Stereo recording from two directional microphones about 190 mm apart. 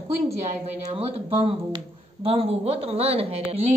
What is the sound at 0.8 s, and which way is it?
Speech, 30° right (ahead or behind).